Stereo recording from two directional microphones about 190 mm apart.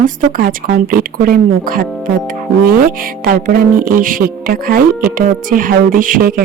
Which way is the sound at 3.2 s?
50° right (ahead or behind).